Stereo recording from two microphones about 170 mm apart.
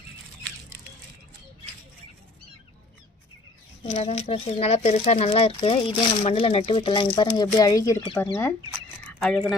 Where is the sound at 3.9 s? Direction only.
40° left (ahead or behind); by 8.6 s 15° left (ahead or behind).